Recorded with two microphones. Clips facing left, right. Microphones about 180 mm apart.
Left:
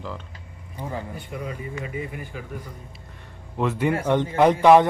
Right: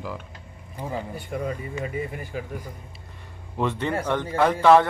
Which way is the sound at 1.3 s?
50° right (ahead or behind).